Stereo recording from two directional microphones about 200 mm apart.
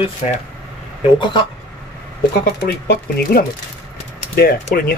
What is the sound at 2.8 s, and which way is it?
Speech, 55° left (ahead or behind).